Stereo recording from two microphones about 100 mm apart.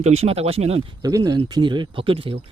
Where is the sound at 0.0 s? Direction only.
90° right.